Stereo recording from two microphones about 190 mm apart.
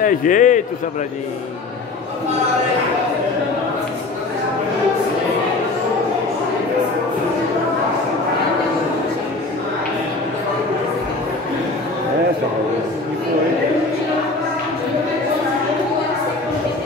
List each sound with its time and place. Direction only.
0.0 s a man's voice: 45° left (ahead or behind)